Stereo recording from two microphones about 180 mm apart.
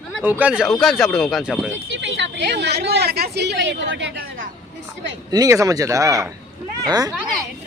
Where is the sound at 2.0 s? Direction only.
80° right.